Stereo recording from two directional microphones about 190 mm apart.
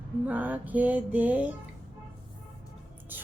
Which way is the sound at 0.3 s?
10° right (ahead or behind).